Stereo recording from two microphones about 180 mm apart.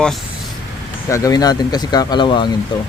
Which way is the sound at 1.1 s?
20° left (ahead or behind).